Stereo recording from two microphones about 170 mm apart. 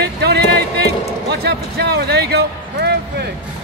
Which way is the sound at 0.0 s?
75° right (ahead or behind).